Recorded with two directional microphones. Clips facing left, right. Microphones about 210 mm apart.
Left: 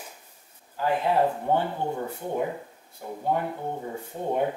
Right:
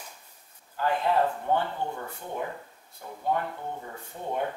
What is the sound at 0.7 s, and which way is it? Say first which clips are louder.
Speech: left 2 dB; 10° left (ahead or behind).